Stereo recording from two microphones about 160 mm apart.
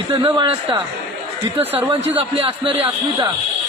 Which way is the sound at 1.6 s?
10° right (ahead or behind).